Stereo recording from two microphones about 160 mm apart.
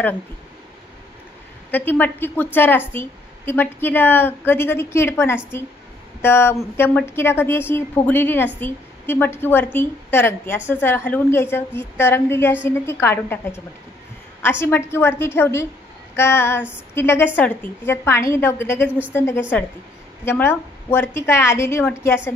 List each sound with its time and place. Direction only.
1.7 s a woman's voice: 10° left (ahead or behind)